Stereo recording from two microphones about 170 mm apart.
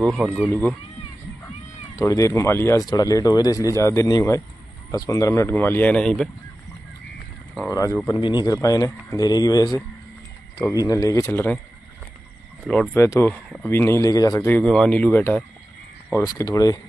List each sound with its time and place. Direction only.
0.0 s speech: centre (ahead or behind)
0.5 s speech: 10° left (ahead or behind)
2.0 s speech: 20° left (ahead or behind)
7.7 s speech: 20° left (ahead or behind)
10.9 s speech: 20° left (ahead or behind)
12.6 s speech: 5° left (ahead or behind)
12.9 s speech: 15° left (ahead or behind)
16.3 s speech: 20° left (ahead or behind)